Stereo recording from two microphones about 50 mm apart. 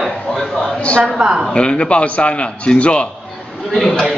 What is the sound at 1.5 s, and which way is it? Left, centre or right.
Speech, left.